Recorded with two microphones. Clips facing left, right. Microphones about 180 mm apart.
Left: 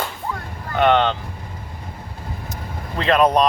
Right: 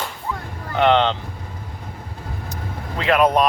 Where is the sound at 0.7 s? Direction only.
20° right (ahead or behind).